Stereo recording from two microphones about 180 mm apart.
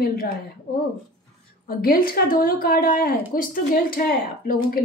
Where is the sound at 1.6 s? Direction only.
55° left (ahead or behind).